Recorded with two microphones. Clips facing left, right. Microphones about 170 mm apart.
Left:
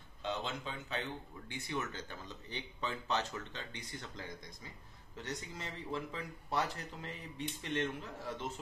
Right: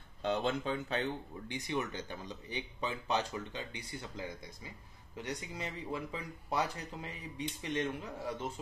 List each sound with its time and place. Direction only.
0.2 s speech: 45° right (ahead or behind)
1.5 s speech: 15° right (ahead or behind)